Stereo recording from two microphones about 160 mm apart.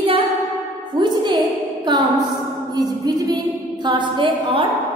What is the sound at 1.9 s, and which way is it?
Music, 30° right (ahead or behind).